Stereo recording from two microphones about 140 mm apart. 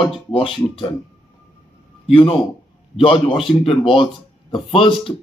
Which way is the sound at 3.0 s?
40° left (ahead or behind).